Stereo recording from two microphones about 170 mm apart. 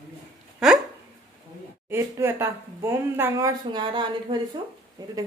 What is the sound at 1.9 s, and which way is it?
Speech, 15° right (ahead or behind).